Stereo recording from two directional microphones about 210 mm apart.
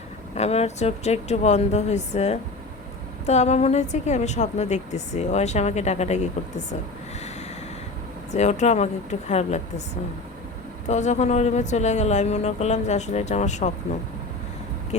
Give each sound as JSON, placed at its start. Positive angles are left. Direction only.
{"t": 0.3, "sound": "a woman's voice", "side_deg": 30}
{"t": 8.3, "sound": "a woman's voice", "side_deg": 35}
{"t": 10.8, "sound": "a woman's voice", "side_deg": 35}